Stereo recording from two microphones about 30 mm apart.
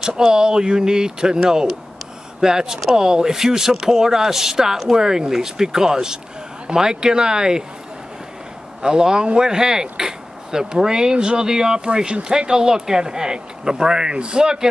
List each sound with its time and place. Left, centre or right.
0.0 s a sound: centre
0.3 s speech: right
8.8 s speech: right